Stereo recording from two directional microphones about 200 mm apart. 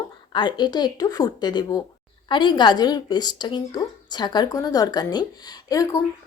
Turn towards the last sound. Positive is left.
turn(degrees=15)  # may be behind; listen again after turning